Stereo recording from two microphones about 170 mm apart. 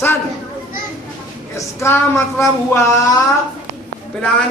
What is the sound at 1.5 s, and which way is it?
A woman's voice, 15° left (ahead or behind).